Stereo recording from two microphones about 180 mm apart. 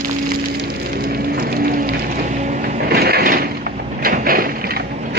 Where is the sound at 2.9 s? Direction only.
60° right (ahead or behind).